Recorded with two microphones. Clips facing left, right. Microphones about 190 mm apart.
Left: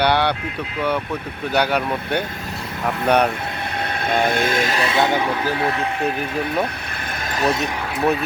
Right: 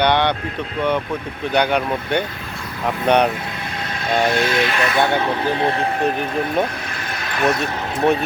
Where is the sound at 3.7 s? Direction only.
60° left (ahead or behind); by 4.8 s 40° left (ahead or behind).